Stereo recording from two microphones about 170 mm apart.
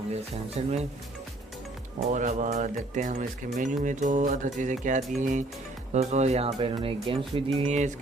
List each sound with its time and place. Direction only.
0.6 s speech: 35° right (ahead or behind)
2.1 s speech: 45° right (ahead or behind)